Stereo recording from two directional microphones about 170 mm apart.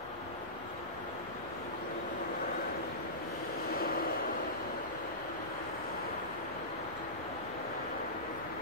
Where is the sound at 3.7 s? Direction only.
60° left (ahead or behind).